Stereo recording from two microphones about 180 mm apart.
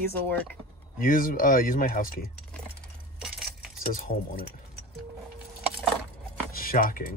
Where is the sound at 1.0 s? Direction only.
50° left (ahead or behind).